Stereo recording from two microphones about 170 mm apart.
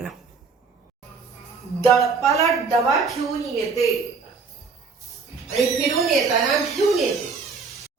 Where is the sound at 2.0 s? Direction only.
20° left (ahead or behind).